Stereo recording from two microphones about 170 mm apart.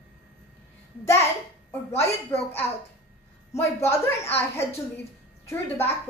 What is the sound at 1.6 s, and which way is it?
A woman's voice, 15° left (ahead or behind).